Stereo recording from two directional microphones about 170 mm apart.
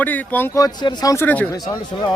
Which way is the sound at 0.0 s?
10° left (ahead or behind).